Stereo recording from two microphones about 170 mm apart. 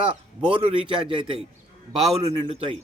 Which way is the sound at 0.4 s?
30° right (ahead or behind).